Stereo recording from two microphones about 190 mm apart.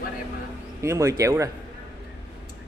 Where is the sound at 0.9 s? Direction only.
15° right (ahead or behind).